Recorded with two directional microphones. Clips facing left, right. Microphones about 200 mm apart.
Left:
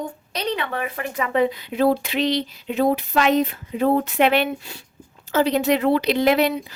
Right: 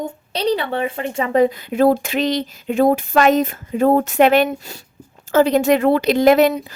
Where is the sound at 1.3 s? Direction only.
45° right (ahead or behind).